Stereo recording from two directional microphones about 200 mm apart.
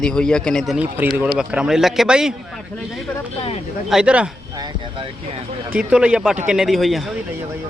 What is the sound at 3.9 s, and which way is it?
Speech, 5° right (ahead or behind).